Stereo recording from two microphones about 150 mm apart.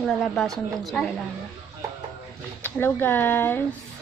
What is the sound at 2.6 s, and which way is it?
Speech, 15° left (ahead or behind).